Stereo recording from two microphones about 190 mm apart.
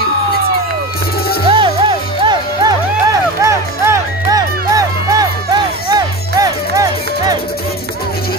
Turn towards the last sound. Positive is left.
turn(degrees=-20)  # may be behind; listen again after turning